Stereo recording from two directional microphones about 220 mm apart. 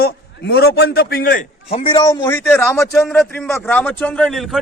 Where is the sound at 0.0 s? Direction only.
45° left (ahead or behind).